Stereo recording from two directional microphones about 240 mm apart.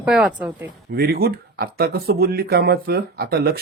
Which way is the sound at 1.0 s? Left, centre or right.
Right.